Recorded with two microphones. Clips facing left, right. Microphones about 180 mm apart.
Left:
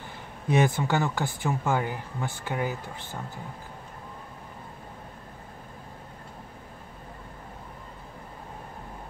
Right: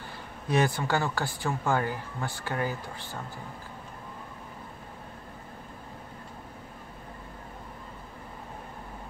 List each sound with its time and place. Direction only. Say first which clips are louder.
0.5 s speech: left 2 dB; 20° left (ahead or behind)